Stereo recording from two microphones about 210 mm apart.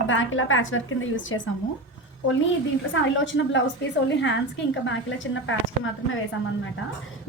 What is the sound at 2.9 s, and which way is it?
A woman's voice, 65° left (ahead or behind).